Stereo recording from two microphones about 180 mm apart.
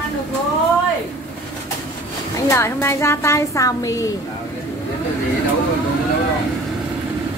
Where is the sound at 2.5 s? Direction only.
15° left (ahead or behind).